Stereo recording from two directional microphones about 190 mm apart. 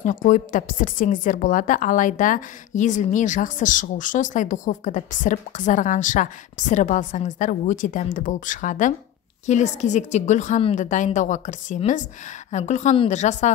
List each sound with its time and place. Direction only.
0.0 s a woman's voice: 45° left (ahead or behind)